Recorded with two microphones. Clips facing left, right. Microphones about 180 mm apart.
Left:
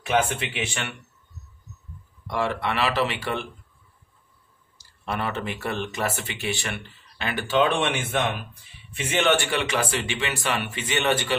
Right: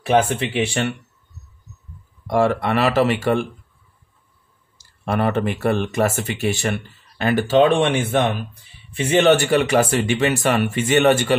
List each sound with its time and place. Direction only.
0.0 s speech: 35° right (ahead or behind)
2.2 s a man's voice: 45° right (ahead or behind)
4.7 s a man's voice: 50° right (ahead or behind)